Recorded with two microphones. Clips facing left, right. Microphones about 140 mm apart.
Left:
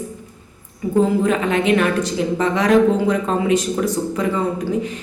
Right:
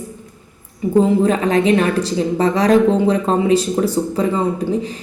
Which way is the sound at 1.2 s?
35° right (ahead or behind).